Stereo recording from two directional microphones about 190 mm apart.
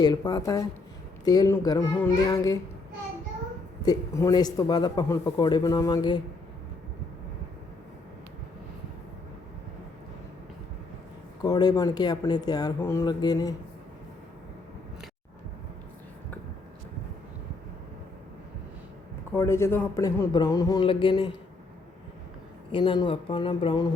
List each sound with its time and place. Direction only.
0.0 s a man's voice: 20° left (ahead or behind)
3.8 s a man's voice: 15° left (ahead or behind)
11.4 s a man's voice: 20° left (ahead or behind)
19.3 s speech: 15° left (ahead or behind)
22.7 s a man's voice: 25° left (ahead or behind)